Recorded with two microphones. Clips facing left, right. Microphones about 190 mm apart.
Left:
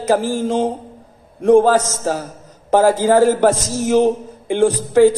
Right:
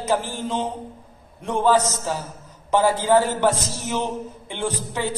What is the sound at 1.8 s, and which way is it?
Speech, 90° left.